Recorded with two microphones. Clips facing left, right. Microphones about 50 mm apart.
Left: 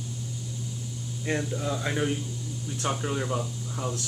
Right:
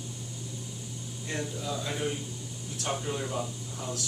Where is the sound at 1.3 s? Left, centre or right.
Left.